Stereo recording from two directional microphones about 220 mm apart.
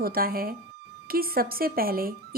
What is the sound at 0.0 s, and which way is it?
Speech, 40° right (ahead or behind).